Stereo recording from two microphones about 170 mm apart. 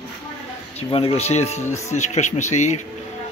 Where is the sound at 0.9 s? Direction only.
35° left (ahead or behind).